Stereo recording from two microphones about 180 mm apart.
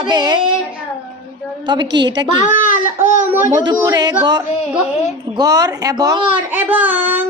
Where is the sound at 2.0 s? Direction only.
25° right (ahead or behind).